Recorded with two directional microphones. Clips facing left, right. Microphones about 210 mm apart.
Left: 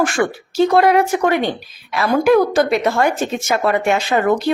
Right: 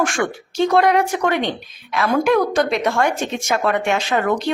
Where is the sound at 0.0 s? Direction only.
5° left (ahead or behind).